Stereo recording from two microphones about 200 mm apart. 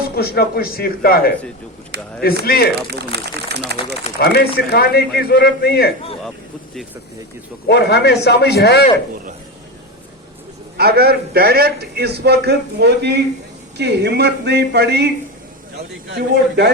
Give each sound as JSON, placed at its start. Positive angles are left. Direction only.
{"t": 0.0, "sound": "a man's voice", "side_deg": 50}
{"t": 1.9, "sound": "speech", "side_deg": -55}
{"t": 2.4, "sound": "a man's voice", "side_deg": 50}
{"t": 2.7, "sound": "speech", "side_deg": -55}
{"t": 4.2, "sound": "a man's voice", "side_deg": 50}
{"t": 7.7, "sound": "speech", "side_deg": 55}
{"t": 10.8, "sound": "a man's voice", "side_deg": -50}